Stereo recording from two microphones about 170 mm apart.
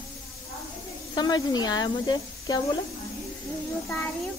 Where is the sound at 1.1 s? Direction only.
25° left (ahead or behind).